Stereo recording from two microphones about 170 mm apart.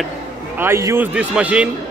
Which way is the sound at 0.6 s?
15° right (ahead or behind).